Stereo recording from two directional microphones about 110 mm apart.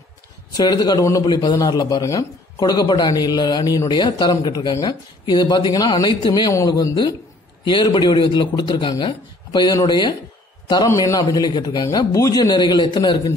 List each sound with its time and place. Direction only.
0.6 s speech: 35° left (ahead or behind)
6.5 s a man's voice: 35° left (ahead or behind)